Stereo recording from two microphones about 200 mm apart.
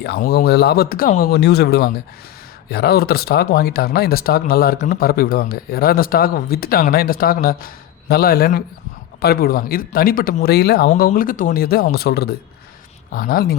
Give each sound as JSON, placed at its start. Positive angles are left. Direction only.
{"t": 0.0, "sound": "speech", "side_deg": 50}